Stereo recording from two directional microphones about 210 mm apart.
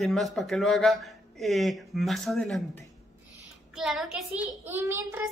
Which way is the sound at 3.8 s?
Centre (ahead or behind).